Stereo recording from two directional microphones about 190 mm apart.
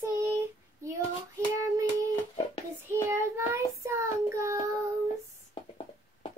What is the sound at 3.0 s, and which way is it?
Child singing, 15° right (ahead or behind).